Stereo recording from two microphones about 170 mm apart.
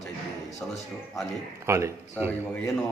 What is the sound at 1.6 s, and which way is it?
Speech, 15° right (ahead or behind).